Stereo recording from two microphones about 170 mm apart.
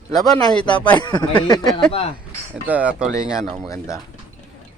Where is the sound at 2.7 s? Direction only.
10° right (ahead or behind).